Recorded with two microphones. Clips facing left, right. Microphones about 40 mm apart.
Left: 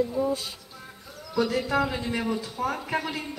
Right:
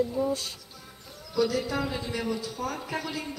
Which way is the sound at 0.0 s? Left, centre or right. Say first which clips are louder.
Left 1 dB; centre.